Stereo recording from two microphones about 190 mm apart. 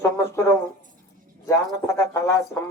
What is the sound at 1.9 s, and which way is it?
Speech, 15° left (ahead or behind).